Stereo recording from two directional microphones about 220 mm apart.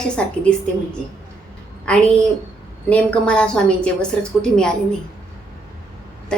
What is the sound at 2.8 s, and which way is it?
A woman's voice, 5° left (ahead or behind).